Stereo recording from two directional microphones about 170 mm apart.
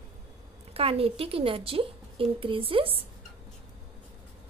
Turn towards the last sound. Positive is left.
turn(degrees=-35)  # may be behind; listen again after turning